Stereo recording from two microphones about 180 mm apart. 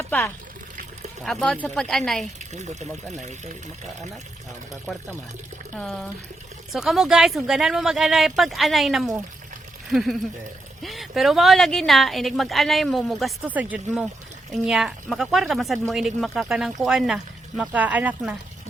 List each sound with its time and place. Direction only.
1.2 s a woman's voice: centre (ahead or behind)
2.5 s speech: 40° right (ahead or behind)
5.7 s a woman's voice: 5° left (ahead or behind)